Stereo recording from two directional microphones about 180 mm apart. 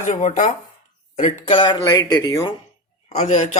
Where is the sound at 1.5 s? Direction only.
25° left (ahead or behind).